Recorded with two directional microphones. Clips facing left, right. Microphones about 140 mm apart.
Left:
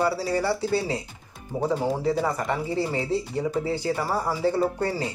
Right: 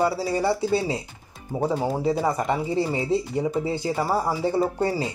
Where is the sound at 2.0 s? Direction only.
15° right (ahead or behind).